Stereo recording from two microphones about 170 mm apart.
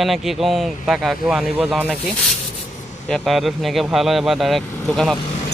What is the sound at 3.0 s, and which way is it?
Speech, centre (ahead or behind).